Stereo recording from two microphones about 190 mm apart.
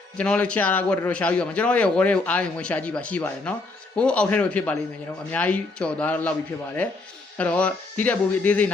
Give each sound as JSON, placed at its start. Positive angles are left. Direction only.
{"t": 0.2, "sound": "a man's voice", "side_deg": 5}
{"t": 7.3, "sound": "a man's voice", "side_deg": 5}